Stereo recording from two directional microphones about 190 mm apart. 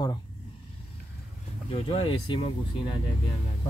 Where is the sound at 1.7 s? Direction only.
30° left (ahead or behind).